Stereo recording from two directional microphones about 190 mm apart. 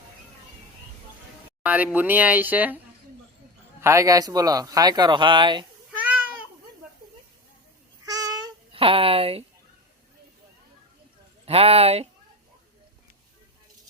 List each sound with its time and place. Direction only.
1.6 s a man's voice: 10° right (ahead or behind); by 5.6 s 25° right (ahead or behind)
6.0 s a sound: 5° right (ahead or behind)
8.0 s babbling: 20° right (ahead or behind)
11.4 s speech: 30° right (ahead or behind)